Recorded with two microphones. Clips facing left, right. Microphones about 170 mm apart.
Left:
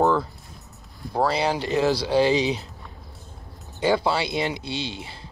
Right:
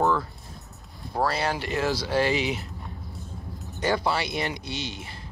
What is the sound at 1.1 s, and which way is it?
Speech, 15° left (ahead or behind).